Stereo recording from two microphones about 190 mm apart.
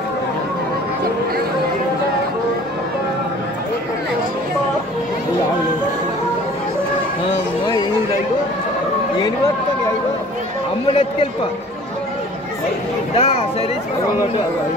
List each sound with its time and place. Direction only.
10.9 s a man's voice: 30° left (ahead or behind)
13.1 s speech: 35° left (ahead or behind)